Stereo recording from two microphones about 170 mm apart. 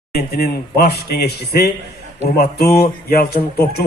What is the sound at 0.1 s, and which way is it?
Speech, 60° left (ahead or behind).